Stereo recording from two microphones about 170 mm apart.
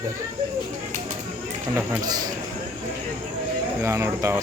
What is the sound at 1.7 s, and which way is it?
Speech, 20° right (ahead or behind).